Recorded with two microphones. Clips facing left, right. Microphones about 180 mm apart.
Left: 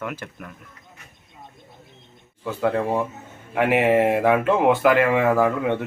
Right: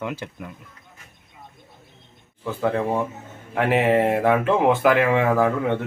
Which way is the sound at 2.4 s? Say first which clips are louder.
Even; 5° left (ahead or behind).